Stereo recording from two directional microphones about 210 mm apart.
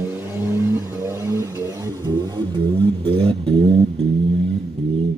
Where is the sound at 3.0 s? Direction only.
25° right (ahead or behind).